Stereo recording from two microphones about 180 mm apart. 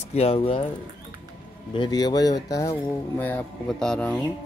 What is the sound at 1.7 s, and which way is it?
Speech, 25° left (ahead or behind).